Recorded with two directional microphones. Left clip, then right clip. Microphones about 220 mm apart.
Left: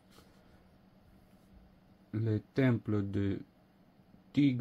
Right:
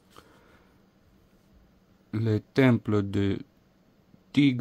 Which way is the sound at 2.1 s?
45° right (ahead or behind).